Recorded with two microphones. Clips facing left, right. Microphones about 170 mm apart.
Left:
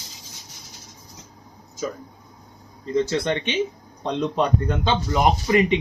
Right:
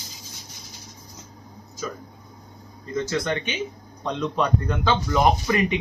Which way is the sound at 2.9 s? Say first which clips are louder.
Left 3 dB; 25° left (ahead or behind).